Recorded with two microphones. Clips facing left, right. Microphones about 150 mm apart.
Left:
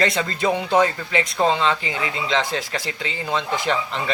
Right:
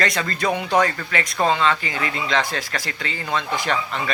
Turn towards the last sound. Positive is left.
turn(degrees=25)  # may be behind; listen again after turning